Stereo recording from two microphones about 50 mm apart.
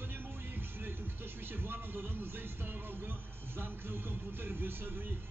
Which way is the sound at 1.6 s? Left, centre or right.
Right.